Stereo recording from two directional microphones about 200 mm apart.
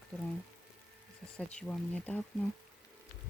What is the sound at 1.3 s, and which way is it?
Speech, 5° left (ahead or behind).